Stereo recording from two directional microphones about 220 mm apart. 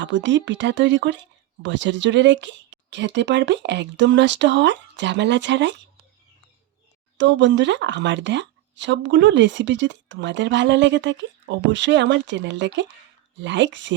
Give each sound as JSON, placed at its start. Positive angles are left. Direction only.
{"t": 0.0, "sound": "speech", "side_deg": -55}
{"t": 7.2, "sound": "speech", "side_deg": -55}